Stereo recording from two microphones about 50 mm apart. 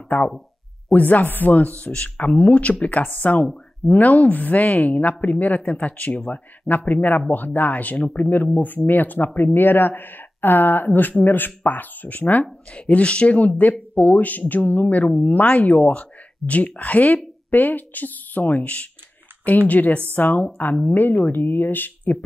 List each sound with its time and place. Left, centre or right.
0.1 s speech: left